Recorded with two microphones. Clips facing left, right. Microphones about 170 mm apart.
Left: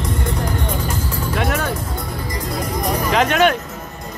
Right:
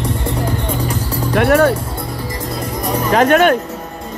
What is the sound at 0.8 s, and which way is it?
Music, 65° right (ahead or behind).